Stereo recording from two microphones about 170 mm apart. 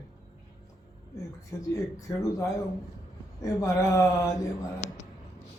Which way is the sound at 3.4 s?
20° left (ahead or behind).